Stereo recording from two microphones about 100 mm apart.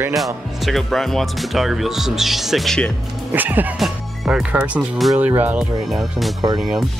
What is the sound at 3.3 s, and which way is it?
Speech, 20° right (ahead or behind).